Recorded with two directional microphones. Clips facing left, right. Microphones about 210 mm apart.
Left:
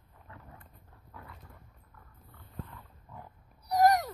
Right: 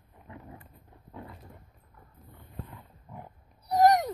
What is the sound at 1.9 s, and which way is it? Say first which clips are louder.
Pig: right 5 dB; 20° right (ahead or behind).